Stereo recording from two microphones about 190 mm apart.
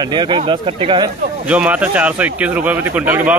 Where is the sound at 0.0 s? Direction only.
25° right (ahead or behind).